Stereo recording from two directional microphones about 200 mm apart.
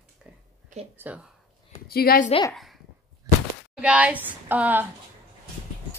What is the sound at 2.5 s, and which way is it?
Speech, centre (ahead or behind).